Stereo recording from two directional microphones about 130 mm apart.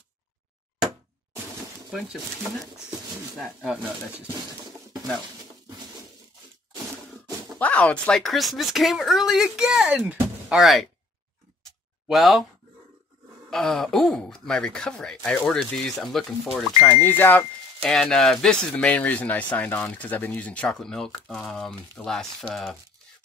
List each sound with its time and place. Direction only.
1.9 s speech: centre (ahead or behind)
7.5 s speech: 10° left (ahead or behind); by 10.2 s 10° right (ahead or behind)
10.5 s speech: centre (ahead or behind)
12.1 s speech: centre (ahead or behind)
13.5 s speech: 5° left (ahead or behind)
17.0 s speech: 15° left (ahead or behind)
17.8 s speech: 5° left (ahead or behind)